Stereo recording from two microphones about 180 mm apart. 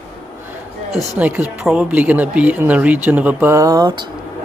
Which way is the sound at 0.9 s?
10° right (ahead or behind).